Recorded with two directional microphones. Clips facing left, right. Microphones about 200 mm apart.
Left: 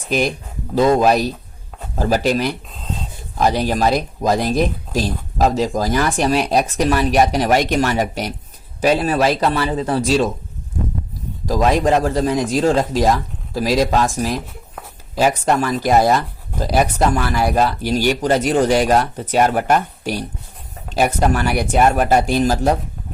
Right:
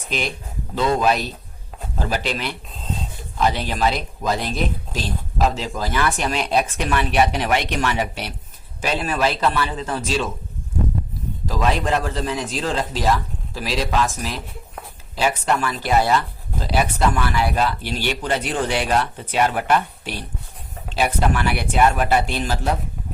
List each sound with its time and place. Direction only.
0.1 s speech: 45° left (ahead or behind)
11.4 s speech: 40° left (ahead or behind)